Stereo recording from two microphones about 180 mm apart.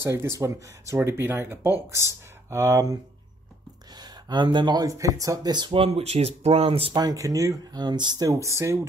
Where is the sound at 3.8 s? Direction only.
25° right (ahead or behind).